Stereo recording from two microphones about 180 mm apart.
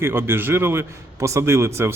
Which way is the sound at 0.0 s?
10° right (ahead or behind).